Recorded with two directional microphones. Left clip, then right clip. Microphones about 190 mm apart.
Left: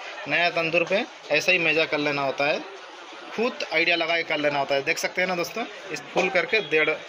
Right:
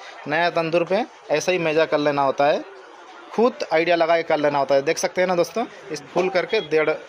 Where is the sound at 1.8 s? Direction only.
10° right (ahead or behind).